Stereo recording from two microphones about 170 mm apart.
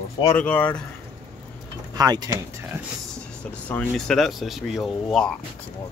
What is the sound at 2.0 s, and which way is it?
Speech, 20° right (ahead or behind).